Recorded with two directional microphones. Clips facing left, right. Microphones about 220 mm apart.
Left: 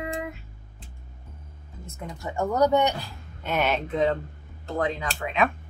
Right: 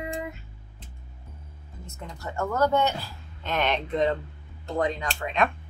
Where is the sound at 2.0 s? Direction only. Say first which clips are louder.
Left 2 dB; 15° left (ahead or behind).